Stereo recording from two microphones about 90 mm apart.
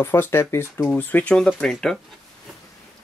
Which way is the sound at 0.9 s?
15° left (ahead or behind).